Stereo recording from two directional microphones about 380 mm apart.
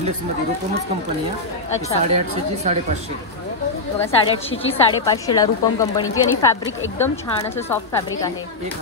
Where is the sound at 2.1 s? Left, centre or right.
Centre.